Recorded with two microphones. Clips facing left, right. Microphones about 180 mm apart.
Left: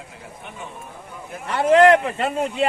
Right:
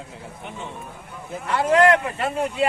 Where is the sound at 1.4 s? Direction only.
25° left (ahead or behind).